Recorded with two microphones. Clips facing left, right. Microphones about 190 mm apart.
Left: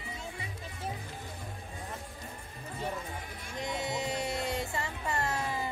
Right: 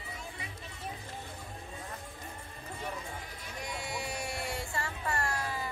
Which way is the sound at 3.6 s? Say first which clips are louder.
Left 5 dB; 20° left (ahead or behind).